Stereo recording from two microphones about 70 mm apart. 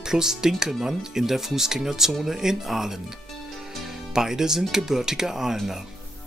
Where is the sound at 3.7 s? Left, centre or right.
Centre.